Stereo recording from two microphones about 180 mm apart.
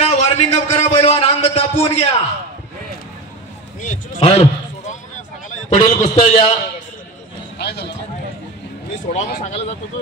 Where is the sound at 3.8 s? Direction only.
35° left (ahead or behind).